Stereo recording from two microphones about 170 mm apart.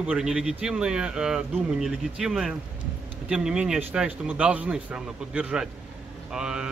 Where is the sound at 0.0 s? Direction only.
5° right (ahead or behind).